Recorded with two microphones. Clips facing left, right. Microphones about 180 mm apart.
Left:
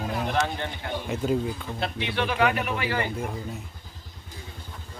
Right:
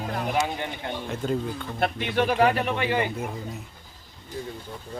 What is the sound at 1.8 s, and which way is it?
Speech, 45° right (ahead or behind).